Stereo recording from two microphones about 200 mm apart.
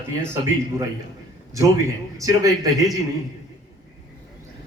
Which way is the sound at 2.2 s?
20° right (ahead or behind).